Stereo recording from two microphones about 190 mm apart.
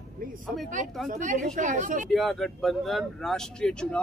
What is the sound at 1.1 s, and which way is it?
A woman's voice, 40° right (ahead or behind).